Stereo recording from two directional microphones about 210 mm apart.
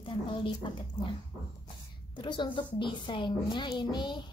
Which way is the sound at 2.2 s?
20° left (ahead or behind).